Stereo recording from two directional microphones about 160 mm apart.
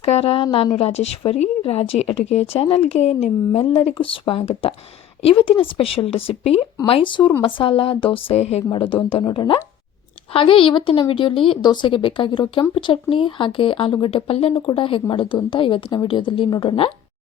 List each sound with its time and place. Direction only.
0.0 s a woman's voice: 40° left (ahead or behind)
8.7 s a woman's voice: 30° left (ahead or behind)